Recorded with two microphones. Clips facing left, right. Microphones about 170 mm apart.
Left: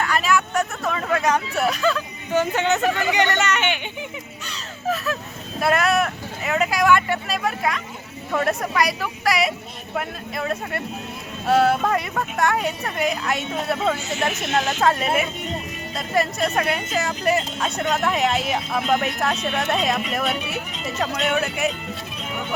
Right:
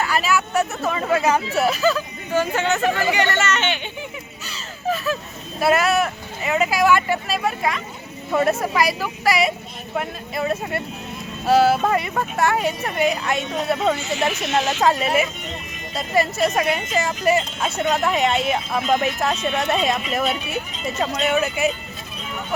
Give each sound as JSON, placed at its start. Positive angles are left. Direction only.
{"t": 0.0, "sound": "a woman's voice", "side_deg": -5}
{"t": 2.3, "sound": "speech", "side_deg": 20}
{"t": 4.4, "sound": "caw", "side_deg": 0}
{"t": 5.5, "sound": "a woman's voice", "side_deg": -5}
{"t": 20.2, "sound": "speech", "side_deg": 65}
{"t": 21.2, "sound": "a woman's voice", "side_deg": 0}